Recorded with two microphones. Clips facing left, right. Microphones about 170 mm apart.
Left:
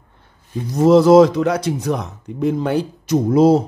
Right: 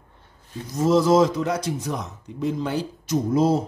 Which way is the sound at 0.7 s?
65° left (ahead or behind).